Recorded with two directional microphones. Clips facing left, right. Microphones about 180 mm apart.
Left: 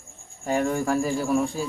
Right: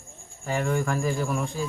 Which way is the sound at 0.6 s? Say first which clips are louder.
Left 2 dB; 35° left (ahead or behind).